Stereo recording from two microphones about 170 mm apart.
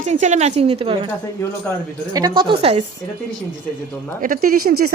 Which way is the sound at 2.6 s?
35° right (ahead or behind).